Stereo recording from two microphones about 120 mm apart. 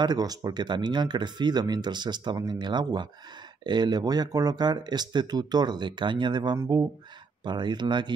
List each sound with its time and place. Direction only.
0.0 s speech: 35° right (ahead or behind)